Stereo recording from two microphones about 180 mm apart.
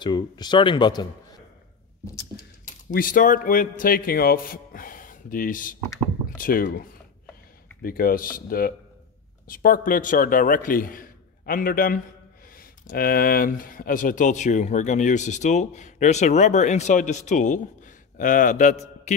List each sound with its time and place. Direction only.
0.0 s a man's voice: 25° left (ahead or behind)
2.9 s a man's voice: 50° left (ahead or behind)